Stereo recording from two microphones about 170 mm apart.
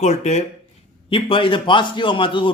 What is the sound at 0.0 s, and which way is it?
Speech, 40° left (ahead or behind).